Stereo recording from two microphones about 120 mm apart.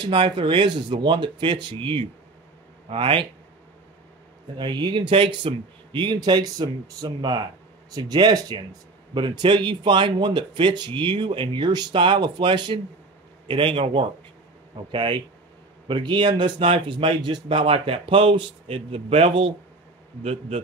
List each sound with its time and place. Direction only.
0.0 s a man's voice: 45° right (ahead or behind)
4.6 s a man's voice: 40° right (ahead or behind); by 20.6 s 60° right (ahead or behind)